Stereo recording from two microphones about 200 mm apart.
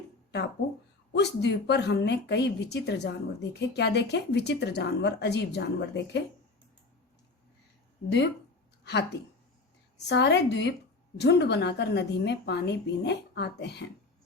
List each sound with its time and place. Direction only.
1.1 s speech: 55° left (ahead or behind)
8.0 s speech: 30° left (ahead or behind)
8.8 s a sound: 60° left (ahead or behind)
10.1 s speech: 60° left (ahead or behind)